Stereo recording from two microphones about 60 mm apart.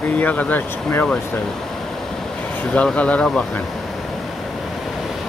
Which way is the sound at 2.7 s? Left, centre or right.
Centre.